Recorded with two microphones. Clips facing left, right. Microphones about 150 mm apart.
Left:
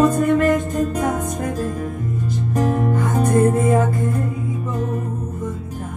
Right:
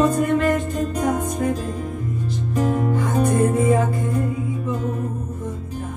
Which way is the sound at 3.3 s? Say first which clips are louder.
Left 3 dB; 45° left (ahead or behind).